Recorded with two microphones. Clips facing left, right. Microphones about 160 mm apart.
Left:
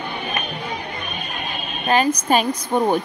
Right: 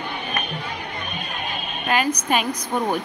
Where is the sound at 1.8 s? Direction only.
30° left (ahead or behind).